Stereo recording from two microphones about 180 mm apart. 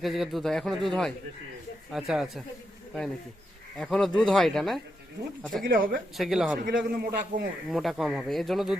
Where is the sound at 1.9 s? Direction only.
5° right (ahead or behind).